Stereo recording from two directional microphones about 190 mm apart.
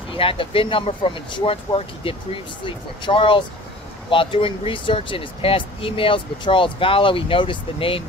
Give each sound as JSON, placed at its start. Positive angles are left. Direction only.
{"t": 0.1, "sound": "speech", "side_deg": 30}